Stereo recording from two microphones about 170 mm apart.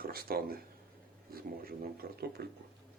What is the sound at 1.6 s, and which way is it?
Speech, 60° right (ahead or behind).